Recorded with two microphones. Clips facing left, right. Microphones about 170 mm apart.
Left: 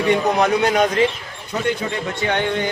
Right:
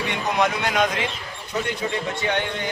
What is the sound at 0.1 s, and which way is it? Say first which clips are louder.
Speech: left 7 dB; 40° left (ahead or behind).